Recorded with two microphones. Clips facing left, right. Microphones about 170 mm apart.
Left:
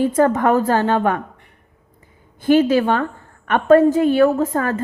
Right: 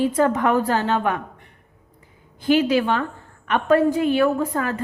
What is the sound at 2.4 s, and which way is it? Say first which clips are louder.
A woman's voice: left 4 dB; 50° left (ahead or behind).